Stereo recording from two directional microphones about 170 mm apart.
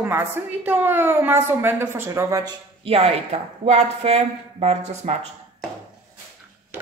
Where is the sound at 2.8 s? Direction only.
35° right (ahead or behind).